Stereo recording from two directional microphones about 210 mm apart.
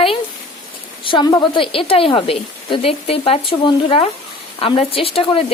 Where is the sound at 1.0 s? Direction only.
20° left (ahead or behind).